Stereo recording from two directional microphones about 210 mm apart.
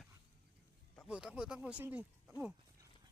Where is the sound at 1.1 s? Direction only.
5° right (ahead or behind).